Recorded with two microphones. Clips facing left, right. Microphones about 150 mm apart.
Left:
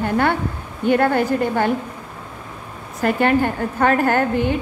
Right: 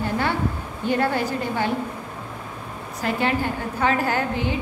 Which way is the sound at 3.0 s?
55° left (ahead or behind).